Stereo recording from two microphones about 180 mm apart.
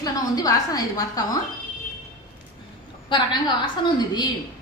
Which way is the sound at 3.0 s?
25° left (ahead or behind).